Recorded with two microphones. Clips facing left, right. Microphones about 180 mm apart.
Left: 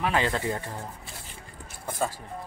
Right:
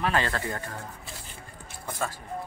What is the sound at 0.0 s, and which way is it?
Speech, 15° left (ahead or behind).